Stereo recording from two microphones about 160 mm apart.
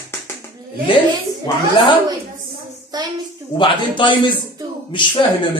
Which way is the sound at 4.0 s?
30° left (ahead or behind).